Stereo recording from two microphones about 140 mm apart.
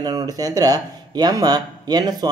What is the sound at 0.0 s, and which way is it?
Speech, 30° right (ahead or behind).